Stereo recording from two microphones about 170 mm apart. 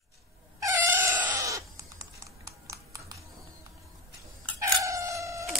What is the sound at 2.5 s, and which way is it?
Typing, 20° right (ahead or behind).